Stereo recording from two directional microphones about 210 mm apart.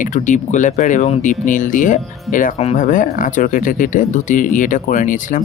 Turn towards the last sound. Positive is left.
turn(degrees=40)  # may be behind; listen again after turning